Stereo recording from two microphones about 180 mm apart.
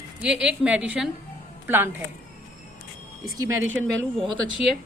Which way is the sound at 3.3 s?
15° right (ahead or behind).